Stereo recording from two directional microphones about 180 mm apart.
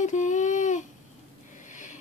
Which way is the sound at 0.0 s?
45° left (ahead or behind).